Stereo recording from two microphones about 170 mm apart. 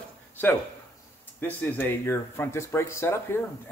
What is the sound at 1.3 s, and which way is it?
Speech, 10° left (ahead or behind).